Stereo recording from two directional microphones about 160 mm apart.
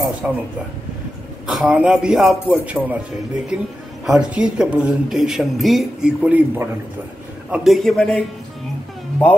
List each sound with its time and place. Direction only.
0.2 s speech: 10° right (ahead or behind)
1.5 s speech: 5° right (ahead or behind)
7.5 s speech: centre (ahead or behind)